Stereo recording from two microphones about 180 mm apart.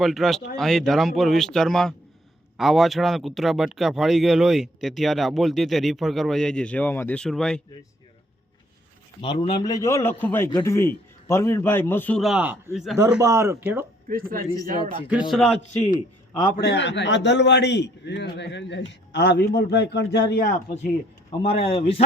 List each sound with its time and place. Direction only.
0.0 s speech: centre (ahead or behind)
9.2 s a man's voice: 25° left (ahead or behind); by 13.0 s centre (ahead or behind)
13.1 s speech: 15° right (ahead or behind)
14.1 s a man's voice: 55° right (ahead or behind)
14.8 s speech: 25° left (ahead or behind)
15.3 s speech: 5° left (ahead or behind)
16.4 s a man's voice: 65° left (ahead or behind)
21.6 s speech: 30° left (ahead or behind)